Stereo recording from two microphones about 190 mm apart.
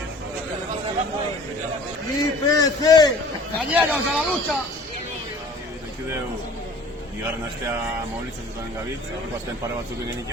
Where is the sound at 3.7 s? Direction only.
5° right (ahead or behind).